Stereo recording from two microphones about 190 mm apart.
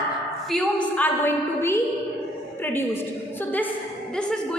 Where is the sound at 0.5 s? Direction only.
5° left (ahead or behind).